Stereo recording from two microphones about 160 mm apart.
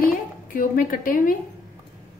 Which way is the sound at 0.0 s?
60° left (ahead or behind).